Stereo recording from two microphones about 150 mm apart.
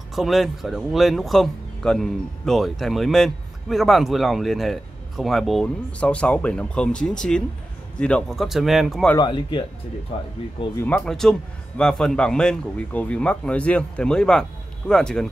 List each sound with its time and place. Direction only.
0.1 s speech: centre (ahead or behind)
9.2 s speech: 35° left (ahead or behind)
10.1 s speech: 45° left (ahead or behind)
10.8 s speech: 15° left (ahead or behind)
11.1 s speech: 5° left (ahead or behind)